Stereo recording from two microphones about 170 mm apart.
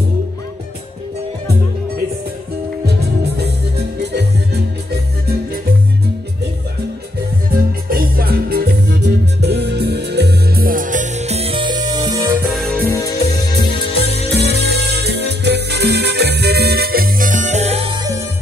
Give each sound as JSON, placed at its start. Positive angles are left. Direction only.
{"t": 2.9, "sound": "music", "side_deg": -75}
{"t": 7.9, "sound": "music", "side_deg": -65}
{"t": 12.4, "sound": "music", "side_deg": 0}
{"t": 14.5, "sound": "music", "side_deg": -75}